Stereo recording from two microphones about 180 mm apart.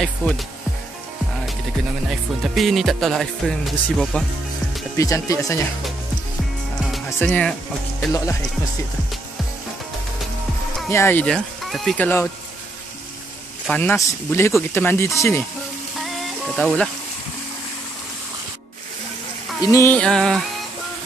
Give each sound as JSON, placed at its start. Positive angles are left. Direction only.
{"t": 2.0, "sound": "music", "side_deg": 0}
{"t": 4.9, "sound": "speech", "side_deg": 15}
{"t": 7.2, "sound": "speech", "side_deg": 5}
{"t": 10.9, "sound": "speech", "side_deg": 15}
{"t": 13.7, "sound": "speech", "side_deg": 10}
{"t": 16.0, "sound": "music", "side_deg": 0}
{"t": 19.6, "sound": "speech", "side_deg": 15}